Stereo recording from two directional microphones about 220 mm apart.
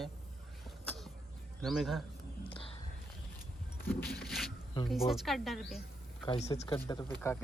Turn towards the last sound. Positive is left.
turn(degrees=15)  # may be behind; listen again after turning